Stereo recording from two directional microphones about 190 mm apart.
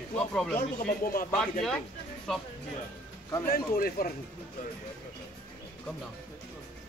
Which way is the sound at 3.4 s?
50° left (ahead or behind).